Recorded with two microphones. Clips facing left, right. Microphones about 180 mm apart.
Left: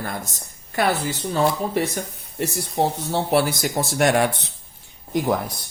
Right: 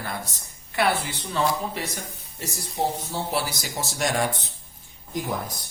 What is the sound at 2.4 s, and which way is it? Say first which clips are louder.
Speech: left 6 dB; 65° left (ahead or behind).